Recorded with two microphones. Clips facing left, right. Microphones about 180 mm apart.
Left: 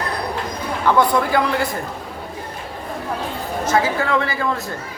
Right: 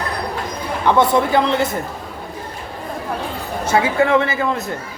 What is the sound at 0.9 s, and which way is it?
Speech, 25° right (ahead or behind).